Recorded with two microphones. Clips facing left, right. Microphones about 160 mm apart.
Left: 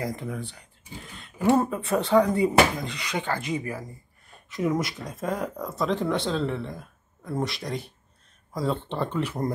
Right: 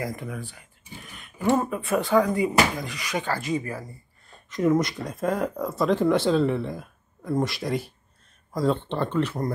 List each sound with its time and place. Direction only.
0.0 s speech: 25° left (ahead or behind)
1.6 s speech: 25° left (ahead or behind); by 9.4 s 10° left (ahead or behind)